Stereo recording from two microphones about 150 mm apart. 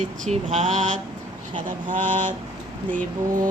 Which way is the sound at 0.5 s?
50° right (ahead or behind).